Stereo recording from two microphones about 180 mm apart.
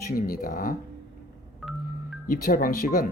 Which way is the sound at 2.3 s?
50° left (ahead or behind).